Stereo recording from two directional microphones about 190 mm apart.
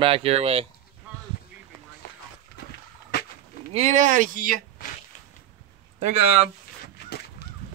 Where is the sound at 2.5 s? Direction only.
50° left (ahead or behind).